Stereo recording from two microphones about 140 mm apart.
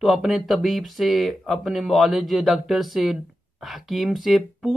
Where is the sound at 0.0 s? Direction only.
Centre (ahead or behind).